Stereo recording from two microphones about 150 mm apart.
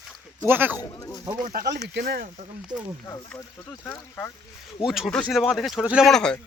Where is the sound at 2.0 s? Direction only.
90° right.